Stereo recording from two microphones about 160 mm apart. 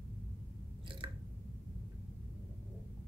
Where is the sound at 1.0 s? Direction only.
30° right (ahead or behind).